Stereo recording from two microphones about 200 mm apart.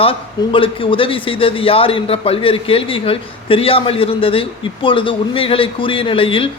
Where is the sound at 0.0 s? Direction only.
25° left (ahead or behind).